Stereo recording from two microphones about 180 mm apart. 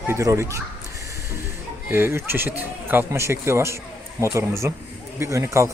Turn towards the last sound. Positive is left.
turn(degrees=-15)  # may be behind; listen again after turning